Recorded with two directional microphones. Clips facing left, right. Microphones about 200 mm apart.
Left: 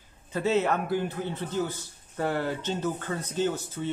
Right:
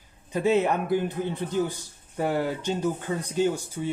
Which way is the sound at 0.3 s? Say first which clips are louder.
Right 3 dB; 15° right (ahead or behind).